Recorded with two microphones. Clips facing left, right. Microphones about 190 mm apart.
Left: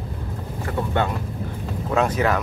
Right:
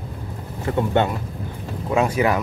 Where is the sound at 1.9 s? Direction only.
10° right (ahead or behind).